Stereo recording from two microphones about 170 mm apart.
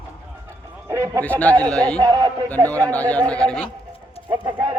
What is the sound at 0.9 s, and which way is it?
Speech, 15° right (ahead or behind).